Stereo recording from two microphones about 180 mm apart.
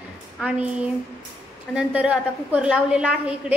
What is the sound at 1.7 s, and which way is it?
A woman's voice, 5° right (ahead or behind).